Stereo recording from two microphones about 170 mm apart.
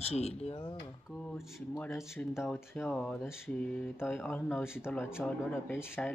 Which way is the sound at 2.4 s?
10° left (ahead or behind).